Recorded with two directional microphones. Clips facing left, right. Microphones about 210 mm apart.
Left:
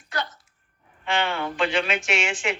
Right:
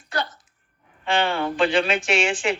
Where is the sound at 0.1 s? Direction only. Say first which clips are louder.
Right 3 dB; 35° right (ahead or behind).